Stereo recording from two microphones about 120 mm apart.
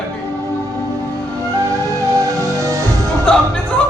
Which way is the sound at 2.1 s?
25° right (ahead or behind).